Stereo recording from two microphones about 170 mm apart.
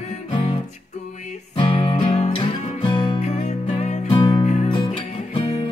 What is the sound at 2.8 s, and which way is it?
Music, 30° left (ahead or behind).